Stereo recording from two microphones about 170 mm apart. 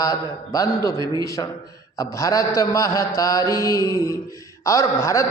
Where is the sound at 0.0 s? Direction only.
20° left (ahead or behind).